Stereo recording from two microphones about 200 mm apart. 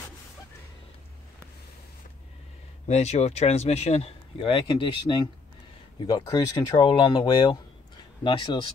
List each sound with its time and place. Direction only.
2.9 s speech: 35° left (ahead or behind)